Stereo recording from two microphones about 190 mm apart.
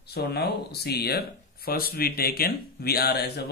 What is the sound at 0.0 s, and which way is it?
Speech, 55° left (ahead or behind).